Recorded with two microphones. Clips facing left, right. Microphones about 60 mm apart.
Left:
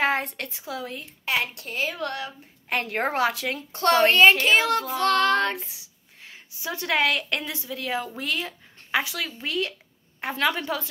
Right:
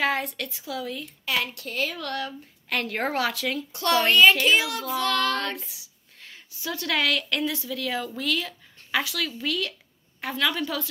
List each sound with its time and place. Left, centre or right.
0.0 s a woman's voice: left